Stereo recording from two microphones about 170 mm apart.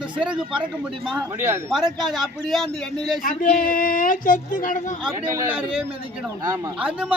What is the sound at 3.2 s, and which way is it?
Speech, 55° left (ahead or behind).